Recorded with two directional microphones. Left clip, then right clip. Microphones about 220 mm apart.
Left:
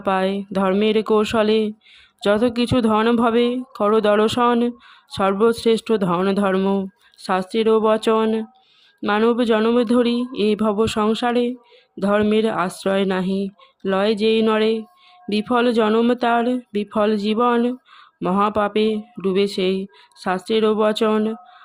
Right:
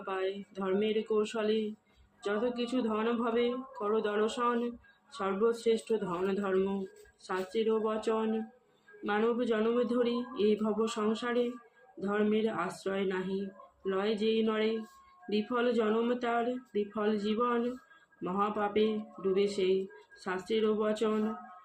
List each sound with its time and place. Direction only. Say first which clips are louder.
0.0 s speech: left 15 dB; 50° left (ahead or behind)